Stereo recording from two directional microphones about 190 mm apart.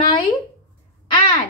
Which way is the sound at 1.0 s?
25° left (ahead or behind).